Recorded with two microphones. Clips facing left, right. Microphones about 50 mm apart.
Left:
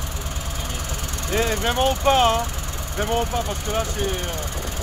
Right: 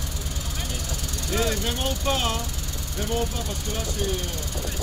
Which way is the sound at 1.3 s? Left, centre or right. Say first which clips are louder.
Left 4 dB; left.